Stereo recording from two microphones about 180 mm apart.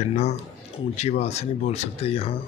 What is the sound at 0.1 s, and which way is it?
Speech, 35° left (ahead or behind).